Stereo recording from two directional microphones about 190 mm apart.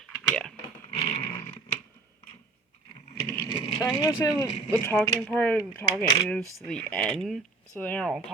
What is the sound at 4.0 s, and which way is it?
Speech, 20° left (ahead or behind).